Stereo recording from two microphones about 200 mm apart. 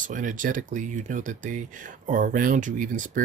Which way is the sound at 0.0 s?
40° right (ahead or behind).